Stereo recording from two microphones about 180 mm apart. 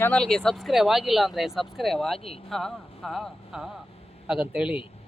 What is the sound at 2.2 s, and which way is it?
Speech, 35° left (ahead or behind).